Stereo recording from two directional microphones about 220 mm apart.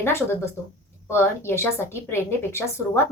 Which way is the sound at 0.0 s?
10° left (ahead or behind).